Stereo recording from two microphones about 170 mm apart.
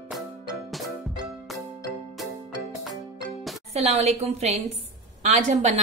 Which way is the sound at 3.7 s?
40° right (ahead or behind).